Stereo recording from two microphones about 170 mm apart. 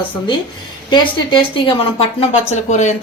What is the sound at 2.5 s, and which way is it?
Speech, 45° left (ahead or behind).